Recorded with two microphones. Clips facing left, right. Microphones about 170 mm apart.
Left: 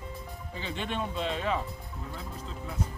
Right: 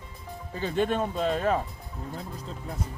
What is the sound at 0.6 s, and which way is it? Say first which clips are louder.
Speech: right 8 dB; 45° right (ahead or behind).